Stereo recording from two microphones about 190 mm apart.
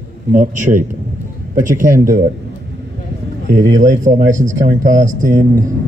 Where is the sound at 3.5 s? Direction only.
45° right (ahead or behind).